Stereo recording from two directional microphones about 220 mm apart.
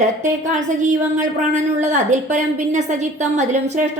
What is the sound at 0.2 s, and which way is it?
A woman's voice, 35° right (ahead or behind).